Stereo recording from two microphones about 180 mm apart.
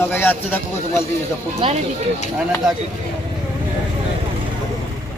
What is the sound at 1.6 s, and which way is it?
Speech, 30° right (ahead or behind).